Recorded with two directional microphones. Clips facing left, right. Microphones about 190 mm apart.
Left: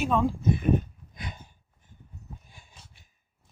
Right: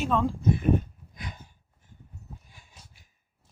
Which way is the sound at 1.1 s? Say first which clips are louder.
Left 1 dB; 25° left (ahead or behind).